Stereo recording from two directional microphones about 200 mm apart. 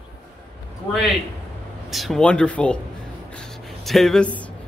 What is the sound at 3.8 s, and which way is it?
Speech, centre (ahead or behind).